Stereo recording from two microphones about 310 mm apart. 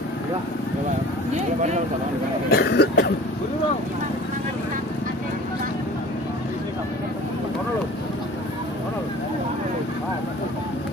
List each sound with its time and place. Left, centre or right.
2.5 s cough: left